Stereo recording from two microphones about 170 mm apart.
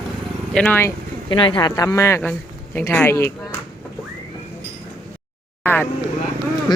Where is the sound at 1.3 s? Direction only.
30° left (ahead or behind); by 3.6 s 15° left (ahead or behind).